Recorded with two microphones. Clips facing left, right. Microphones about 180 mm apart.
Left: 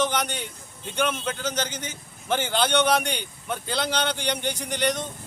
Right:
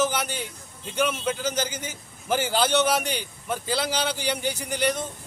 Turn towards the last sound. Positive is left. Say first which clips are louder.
# even
turn(degrees=-5)  # may be behind; listen again after turning